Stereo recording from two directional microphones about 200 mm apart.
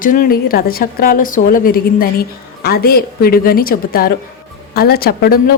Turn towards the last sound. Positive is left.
turn(degrees=50)  # may be behind; listen again after turning